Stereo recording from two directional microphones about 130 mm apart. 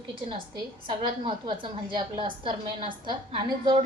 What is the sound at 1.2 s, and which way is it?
A woman's voice, 40° right (ahead or behind).